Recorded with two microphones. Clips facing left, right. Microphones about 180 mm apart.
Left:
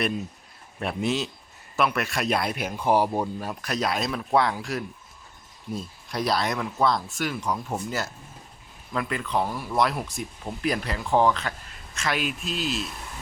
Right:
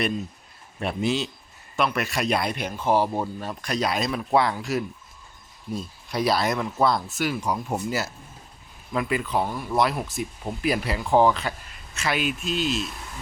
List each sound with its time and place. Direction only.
0.8 s speech: centre (ahead or behind)